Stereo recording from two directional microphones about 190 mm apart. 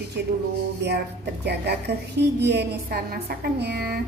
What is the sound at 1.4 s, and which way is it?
A woman's voice, 60° right (ahead or behind).